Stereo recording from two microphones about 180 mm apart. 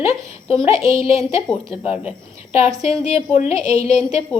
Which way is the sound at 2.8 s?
35° left (ahead or behind).